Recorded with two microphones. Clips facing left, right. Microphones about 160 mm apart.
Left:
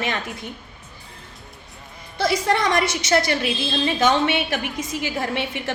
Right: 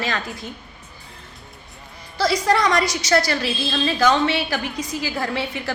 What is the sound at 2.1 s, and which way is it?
A woman's voice, 25° left (ahead or behind).